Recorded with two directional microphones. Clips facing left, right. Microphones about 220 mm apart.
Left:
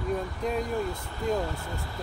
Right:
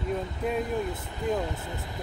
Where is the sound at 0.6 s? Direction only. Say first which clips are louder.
Even; 20° right (ahead or behind).